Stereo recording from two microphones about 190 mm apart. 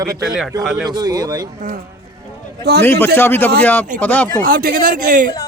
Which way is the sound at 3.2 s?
10° left (ahead or behind).